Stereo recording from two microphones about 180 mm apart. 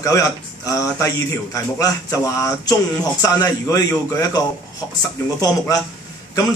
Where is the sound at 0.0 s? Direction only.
20° left (ahead or behind).